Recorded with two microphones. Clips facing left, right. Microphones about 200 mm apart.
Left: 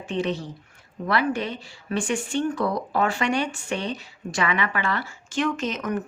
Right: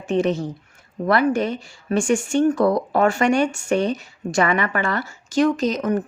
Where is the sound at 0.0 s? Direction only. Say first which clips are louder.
Right 6 dB; 45° right (ahead or behind).